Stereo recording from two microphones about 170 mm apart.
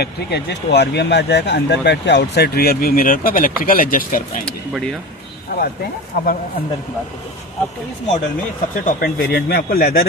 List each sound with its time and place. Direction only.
0.0 s speech: 80° left; by 4.5 s 55° left (ahead or behind)
5.5 s a man's voice: 65° left (ahead or behind)
8.8 s a man's voice: 65° left (ahead or behind)